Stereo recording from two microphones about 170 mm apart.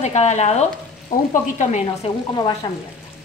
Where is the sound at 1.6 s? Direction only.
40° left (ahead or behind).